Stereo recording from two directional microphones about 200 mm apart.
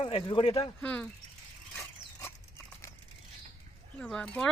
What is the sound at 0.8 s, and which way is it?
Speech, 5° left (ahead or behind).